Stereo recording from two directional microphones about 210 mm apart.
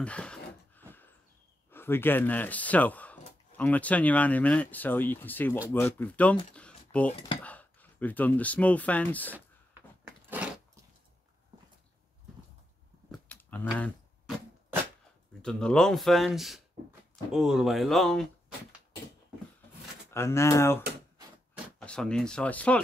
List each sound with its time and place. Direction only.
0.0 s speech: 5° left (ahead or behind)
1.7 s speech: 10° left (ahead or behind)
6.5 s a sound: 5° left (ahead or behind)
7.1 s speech: 25° left (ahead or behind)
7.4 s speech: 5° left (ahead or behind)
10.0 s biting: 5° right (ahead or behind)
13.1 s a sound: 5° left (ahead or behind)
15.4 s speech: 5° left (ahead or behind)
20.1 s speech: 10° left (ahead or behind)